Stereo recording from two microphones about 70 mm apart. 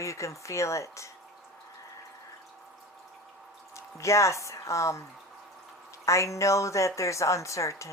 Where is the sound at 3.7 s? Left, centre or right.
Left.